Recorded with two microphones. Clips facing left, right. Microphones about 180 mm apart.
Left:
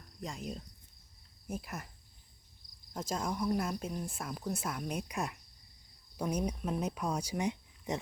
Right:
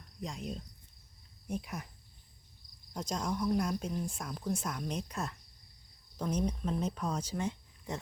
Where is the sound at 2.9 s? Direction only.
5° left (ahead or behind).